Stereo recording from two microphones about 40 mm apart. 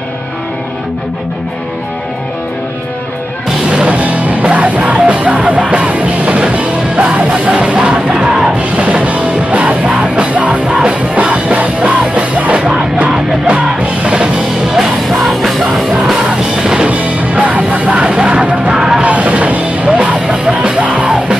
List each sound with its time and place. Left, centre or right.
3.7 s music: right
14.1 s music: centre
16.6 s music: centre
16.9 s music: right